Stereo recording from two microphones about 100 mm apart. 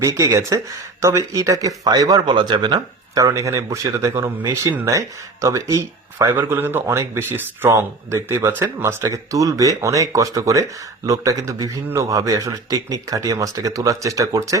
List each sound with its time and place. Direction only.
0.0 s speech: 35° right (ahead or behind)
3.2 s speech: 30° right (ahead or behind)